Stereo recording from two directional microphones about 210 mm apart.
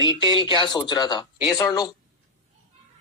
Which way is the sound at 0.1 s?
25° left (ahead or behind).